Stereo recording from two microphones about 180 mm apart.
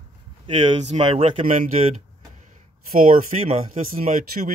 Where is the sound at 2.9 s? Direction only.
50° right (ahead or behind).